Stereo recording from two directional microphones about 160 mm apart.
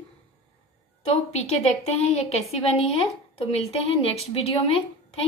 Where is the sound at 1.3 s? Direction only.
40° left (ahead or behind).